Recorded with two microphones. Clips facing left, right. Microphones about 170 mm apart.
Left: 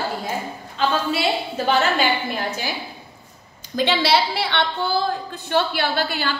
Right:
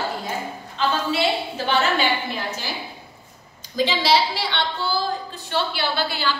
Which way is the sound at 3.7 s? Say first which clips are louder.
Left 1 dB; 60° left (ahead or behind).